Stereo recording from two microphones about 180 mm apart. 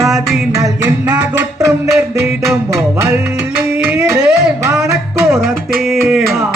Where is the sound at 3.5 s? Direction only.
5° right (ahead or behind).